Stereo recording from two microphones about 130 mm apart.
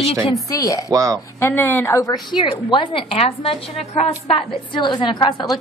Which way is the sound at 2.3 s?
35° left (ahead or behind).